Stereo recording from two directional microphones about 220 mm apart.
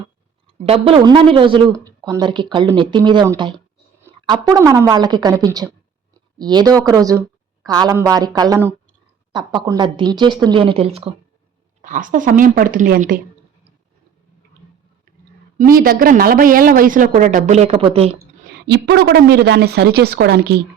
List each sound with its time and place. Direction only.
0.6 s a woman's voice: 25° right (ahead or behind)
11.8 s speech: 35° right (ahead or behind)
15.5 s speech: 40° right (ahead or behind); by 18.1 s 25° right (ahead or behind)
18.5 s a woman's voice: 50° right (ahead or behind)